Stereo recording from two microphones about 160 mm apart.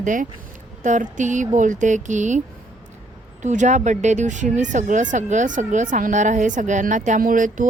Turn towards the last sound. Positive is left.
turn(degrees=-55)  # may be behind; listen again after turning